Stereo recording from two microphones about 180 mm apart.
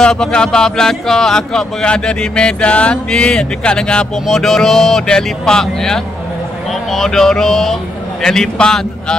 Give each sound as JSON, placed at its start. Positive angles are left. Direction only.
{"t": 0.0, "sound": "speech", "side_deg": 5}